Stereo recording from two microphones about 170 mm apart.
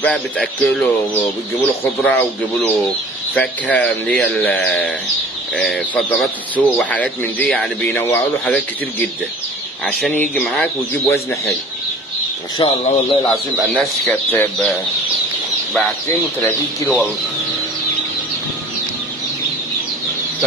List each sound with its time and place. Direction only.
0.0 s speech: 5° left (ahead or behind)
5.6 s speech: 5° left (ahead or behind)
10.3 s speech: 5° left (ahead or behind)
12.5 s speech: 30° left (ahead or behind)
13.7 s speech: 10° left (ahead or behind)
16.3 s speech: 10° left (ahead or behind)